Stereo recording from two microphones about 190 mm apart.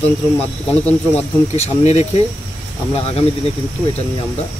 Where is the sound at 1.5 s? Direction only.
35° left (ahead or behind).